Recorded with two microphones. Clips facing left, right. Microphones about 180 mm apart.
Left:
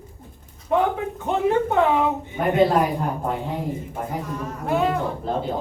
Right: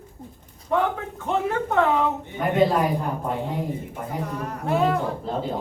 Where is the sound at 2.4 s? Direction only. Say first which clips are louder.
Left 3 dB; 65° left (ahead or behind).